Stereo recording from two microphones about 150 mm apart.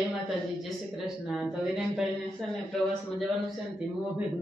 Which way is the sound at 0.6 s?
Centre (ahead or behind).